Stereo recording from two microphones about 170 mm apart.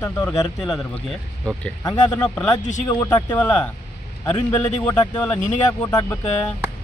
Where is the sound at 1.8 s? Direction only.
25° left (ahead or behind).